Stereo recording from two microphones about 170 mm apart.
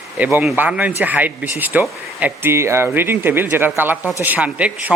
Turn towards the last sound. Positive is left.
turn(degrees=-10)  # may be behind; listen again after turning